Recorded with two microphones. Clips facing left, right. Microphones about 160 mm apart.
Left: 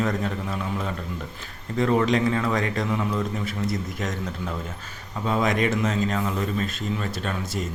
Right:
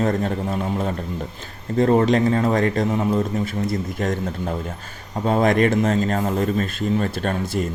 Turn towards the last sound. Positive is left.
turn(degrees=-50)  # may be behind; listen again after turning